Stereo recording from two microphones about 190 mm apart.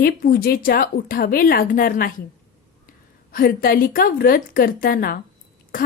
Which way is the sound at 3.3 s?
50° left (ahead or behind).